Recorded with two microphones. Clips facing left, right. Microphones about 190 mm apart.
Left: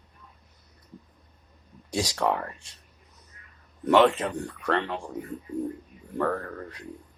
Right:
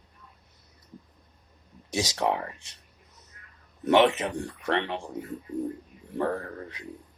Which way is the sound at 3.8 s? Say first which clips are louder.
Left 1 dB; 20° right (ahead or behind).